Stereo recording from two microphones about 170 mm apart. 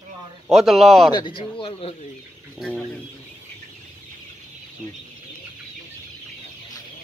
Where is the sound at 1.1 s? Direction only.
30° left (ahead or behind).